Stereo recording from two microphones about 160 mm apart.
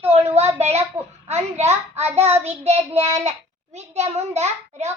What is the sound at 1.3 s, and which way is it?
Child singing, 45° right (ahead or behind).